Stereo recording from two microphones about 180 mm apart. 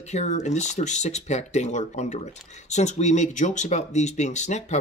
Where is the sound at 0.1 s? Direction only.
40° left (ahead or behind).